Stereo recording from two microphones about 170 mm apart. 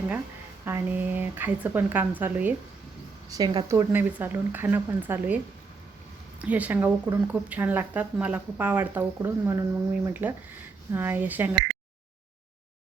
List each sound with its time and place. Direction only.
0.6 s speech: 10° right (ahead or behind)
3.2 s speech: 20° right (ahead or behind)
6.4 s speech: 10° right (ahead or behind)